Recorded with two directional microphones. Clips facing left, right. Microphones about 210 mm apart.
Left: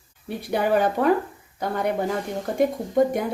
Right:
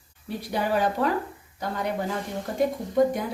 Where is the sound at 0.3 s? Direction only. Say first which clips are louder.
Left 4 dB; 55° left (ahead or behind).